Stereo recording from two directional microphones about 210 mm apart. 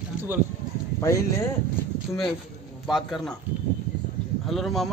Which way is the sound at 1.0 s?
15° left (ahead or behind).